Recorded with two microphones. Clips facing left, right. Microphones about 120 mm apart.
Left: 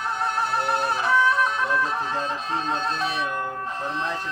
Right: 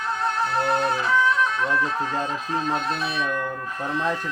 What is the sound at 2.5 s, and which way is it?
Speech, 30° left (ahead or behind).